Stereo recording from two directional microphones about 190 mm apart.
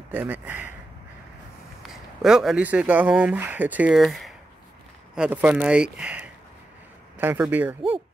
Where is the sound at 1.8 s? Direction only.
Centre (ahead or behind).